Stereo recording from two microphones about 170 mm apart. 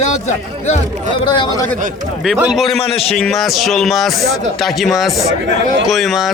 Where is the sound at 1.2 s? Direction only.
25° left (ahead or behind).